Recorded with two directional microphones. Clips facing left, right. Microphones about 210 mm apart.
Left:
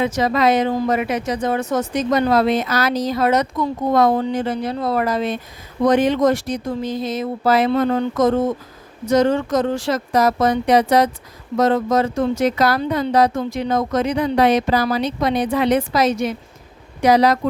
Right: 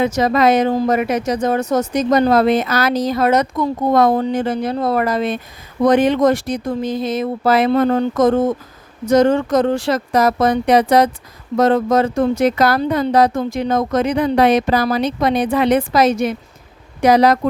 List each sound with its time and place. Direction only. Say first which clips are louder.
0.0 s speech: right 3 dB; 45° right (ahead or behind); by 7.7 s 60° right (ahead or behind)
7.7 s speech: right 3 dB; 45° right (ahead or behind)